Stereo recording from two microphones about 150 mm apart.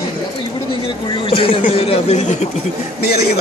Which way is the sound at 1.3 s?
35° left (ahead or behind).